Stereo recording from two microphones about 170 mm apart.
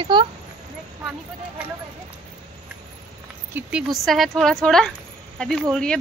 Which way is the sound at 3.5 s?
5° right (ahead or behind).